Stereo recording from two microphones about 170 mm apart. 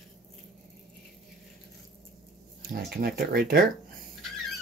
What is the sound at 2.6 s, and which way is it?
Speech, 55° right (ahead or behind).